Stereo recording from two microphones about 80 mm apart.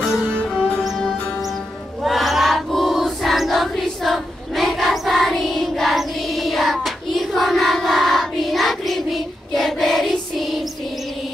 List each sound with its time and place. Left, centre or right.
0.6 s music: centre
2.0 s choir: centre